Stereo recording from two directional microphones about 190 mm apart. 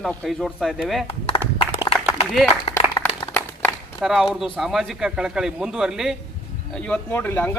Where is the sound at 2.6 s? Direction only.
30° left (ahead or behind).